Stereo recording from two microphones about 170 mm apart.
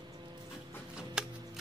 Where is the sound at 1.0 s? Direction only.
5° right (ahead or behind).